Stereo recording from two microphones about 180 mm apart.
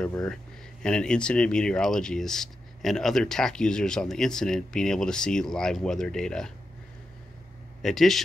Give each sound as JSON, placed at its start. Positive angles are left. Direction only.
{"t": 0.0, "sound": "speech", "side_deg": 5}
{"t": 7.8, "sound": "speech", "side_deg": 0}